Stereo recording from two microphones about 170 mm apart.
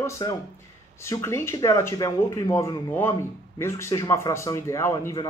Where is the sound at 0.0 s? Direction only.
20° left (ahead or behind).